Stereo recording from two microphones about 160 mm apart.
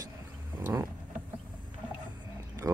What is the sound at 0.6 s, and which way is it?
Vehicle, 15° right (ahead or behind).